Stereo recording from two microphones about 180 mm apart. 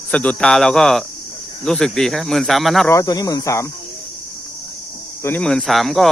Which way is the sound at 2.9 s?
20° left (ahead or behind).